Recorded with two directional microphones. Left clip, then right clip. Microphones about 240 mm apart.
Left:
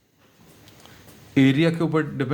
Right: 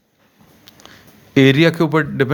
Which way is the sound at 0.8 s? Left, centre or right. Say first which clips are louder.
Right 8 dB; right.